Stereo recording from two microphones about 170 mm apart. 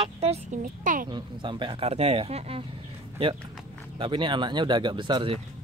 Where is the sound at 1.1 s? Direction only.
30° right (ahead or behind).